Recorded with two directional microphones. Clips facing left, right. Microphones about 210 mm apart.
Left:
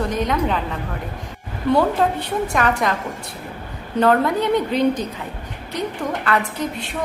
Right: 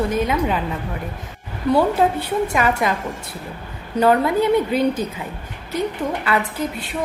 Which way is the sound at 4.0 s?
5° right (ahead or behind).